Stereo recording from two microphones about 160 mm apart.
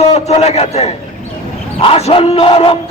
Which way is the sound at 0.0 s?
40° left (ahead or behind).